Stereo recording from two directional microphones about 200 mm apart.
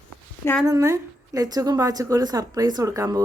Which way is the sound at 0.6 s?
15° right (ahead or behind).